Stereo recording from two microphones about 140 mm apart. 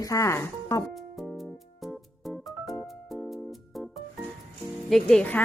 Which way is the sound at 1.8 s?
Centre (ahead or behind).